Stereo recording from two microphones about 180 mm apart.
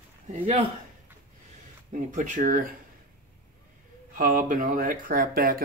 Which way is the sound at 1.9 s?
45° right (ahead or behind).